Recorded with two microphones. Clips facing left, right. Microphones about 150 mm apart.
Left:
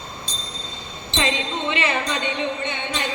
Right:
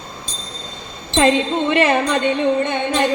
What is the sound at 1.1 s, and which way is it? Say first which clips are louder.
Speech: right 9 dB; 50° right (ahead or behind).